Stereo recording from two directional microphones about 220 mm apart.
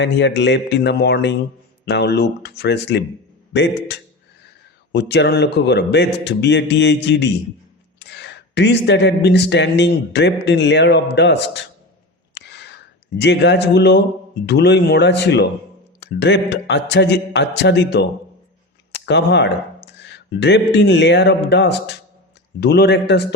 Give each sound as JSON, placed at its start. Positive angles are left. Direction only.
{"t": 0.0, "sound": "speech", "side_deg": 50}
{"t": 12.3, "sound": "a sound", "side_deg": 50}
{"t": 13.1, "sound": "speech", "side_deg": 50}